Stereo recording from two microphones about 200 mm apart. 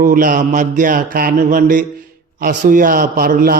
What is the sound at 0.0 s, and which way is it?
A man's voice, 45° right (ahead or behind).